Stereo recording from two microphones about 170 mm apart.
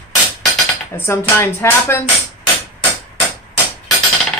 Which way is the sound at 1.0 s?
15° left (ahead or behind).